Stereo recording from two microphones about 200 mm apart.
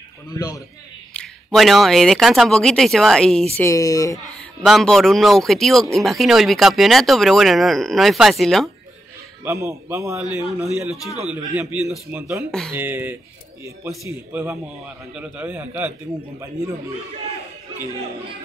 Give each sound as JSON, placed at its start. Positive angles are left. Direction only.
{"t": 1.1, "sound": "speech", "side_deg": 0}
{"t": 3.5, "sound": "speech", "side_deg": 15}
{"t": 4.6, "sound": "speech", "side_deg": 0}
{"t": 9.4, "sound": "a man's voice", "side_deg": -15}
{"t": 12.4, "sound": "speech", "side_deg": 5}
{"t": 12.7, "sound": "a man's voice", "side_deg": -10}